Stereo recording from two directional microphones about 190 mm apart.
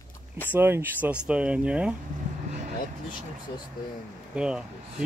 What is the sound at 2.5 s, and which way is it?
Vehicle, 40° right (ahead or behind).